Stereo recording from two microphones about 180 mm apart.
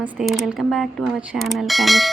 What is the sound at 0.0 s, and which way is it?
Speech, 5° right (ahead or behind).